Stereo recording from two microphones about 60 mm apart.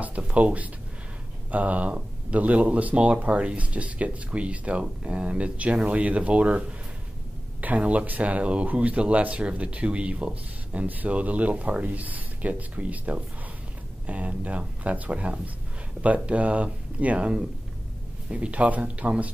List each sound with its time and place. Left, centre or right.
0.0 s a sound: right
1.5 s speech: right
7.6 s speech: right